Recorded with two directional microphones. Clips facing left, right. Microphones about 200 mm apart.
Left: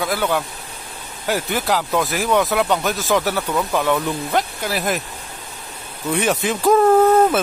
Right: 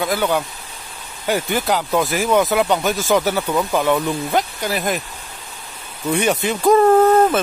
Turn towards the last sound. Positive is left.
turn(degrees=5)  # may be behind; listen again after turning